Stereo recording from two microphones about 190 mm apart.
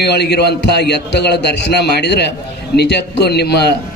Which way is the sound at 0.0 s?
60° left (ahead or behind).